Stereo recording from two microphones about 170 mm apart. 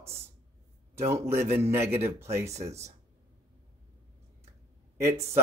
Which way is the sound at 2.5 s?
40° right (ahead or behind).